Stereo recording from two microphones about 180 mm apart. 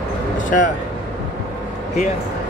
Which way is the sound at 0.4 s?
45° left (ahead or behind).